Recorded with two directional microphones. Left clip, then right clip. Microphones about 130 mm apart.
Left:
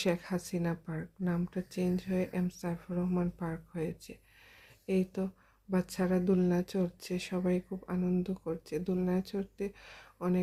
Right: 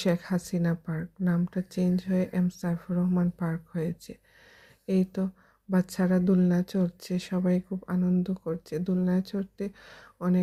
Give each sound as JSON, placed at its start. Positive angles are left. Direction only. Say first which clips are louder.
{"t": 0.0, "sound": "speech", "louder": "right 4 dB", "side_deg": -35}